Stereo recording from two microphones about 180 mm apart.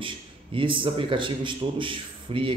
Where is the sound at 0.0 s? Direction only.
30° right (ahead or behind).